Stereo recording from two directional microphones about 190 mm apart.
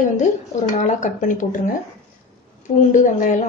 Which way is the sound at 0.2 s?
40° left (ahead or behind).